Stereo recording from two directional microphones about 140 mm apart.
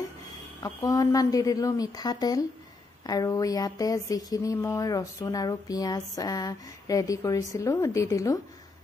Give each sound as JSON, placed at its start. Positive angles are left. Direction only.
{"t": 0.6, "sound": "speech", "side_deg": 25}